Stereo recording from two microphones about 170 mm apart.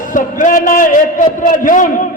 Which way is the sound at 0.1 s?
50° left (ahead or behind).